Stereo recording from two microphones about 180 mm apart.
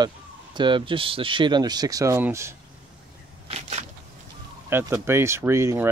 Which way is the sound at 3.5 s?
40° right (ahead or behind).